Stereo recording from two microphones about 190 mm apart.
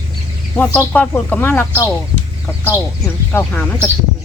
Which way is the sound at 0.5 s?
10° left (ahead or behind).